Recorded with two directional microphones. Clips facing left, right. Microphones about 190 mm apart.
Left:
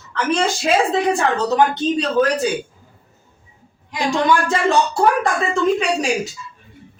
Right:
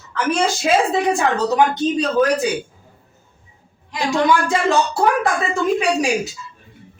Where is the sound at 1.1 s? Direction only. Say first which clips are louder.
Even; 10° right (ahead or behind).